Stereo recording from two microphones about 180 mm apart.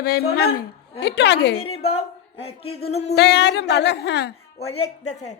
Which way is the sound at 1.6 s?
35° left (ahead or behind).